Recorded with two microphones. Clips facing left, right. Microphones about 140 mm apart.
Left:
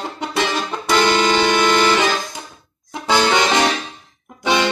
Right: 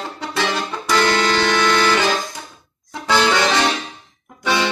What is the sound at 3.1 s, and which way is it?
Music, 20° left (ahead or behind).